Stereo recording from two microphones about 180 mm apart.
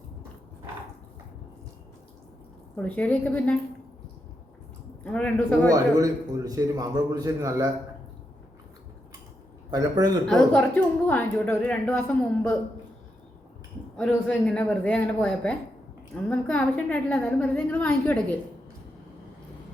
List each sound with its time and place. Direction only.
2.7 s a woman's voice: 10° left (ahead or behind)
5.0 s speech: 5° left (ahead or behind)
5.7 s a man's voice: 20° right (ahead or behind)
9.7 s a man's voice: 20° right (ahead or behind)
10.2 s a woman's voice: 5° left (ahead or behind)
13.9 s a woman's voice: 5° left (ahead or behind)